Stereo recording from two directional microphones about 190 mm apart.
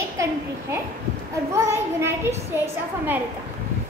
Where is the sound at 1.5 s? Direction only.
15° right (ahead or behind).